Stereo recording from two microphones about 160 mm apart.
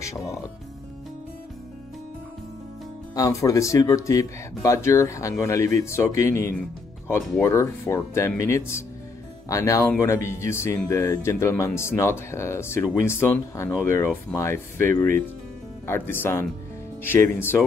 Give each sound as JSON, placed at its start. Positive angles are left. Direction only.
{"t": 3.2, "sound": "speech", "side_deg": 20}
{"t": 15.9, "sound": "speech", "side_deg": 15}